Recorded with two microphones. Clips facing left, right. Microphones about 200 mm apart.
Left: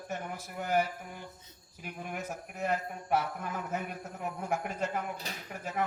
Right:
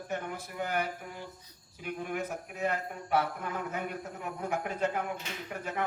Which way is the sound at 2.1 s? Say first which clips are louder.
Right 3 dB; 60° right (ahead or behind).